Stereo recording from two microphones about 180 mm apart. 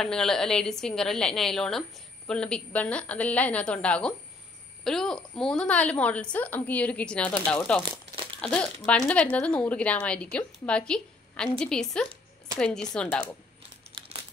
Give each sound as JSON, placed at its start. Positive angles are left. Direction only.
{"t": 0.0, "sound": "a woman's voice", "side_deg": 5}
{"t": 7.9, "sound": "crumpling", "side_deg": -30}
{"t": 8.4, "sound": "a woman's voice", "side_deg": 5}